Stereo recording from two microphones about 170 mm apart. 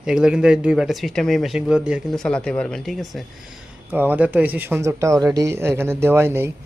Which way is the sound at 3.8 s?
10° right (ahead or behind).